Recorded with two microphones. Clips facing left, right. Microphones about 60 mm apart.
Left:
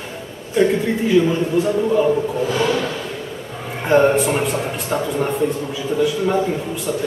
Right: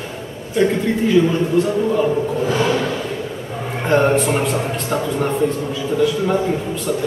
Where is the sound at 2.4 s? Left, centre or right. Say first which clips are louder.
Right 1 dB; right.